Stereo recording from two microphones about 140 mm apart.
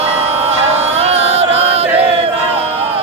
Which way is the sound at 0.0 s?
50° right (ahead or behind).